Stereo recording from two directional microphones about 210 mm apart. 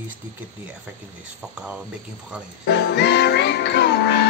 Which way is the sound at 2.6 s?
55° left (ahead or behind).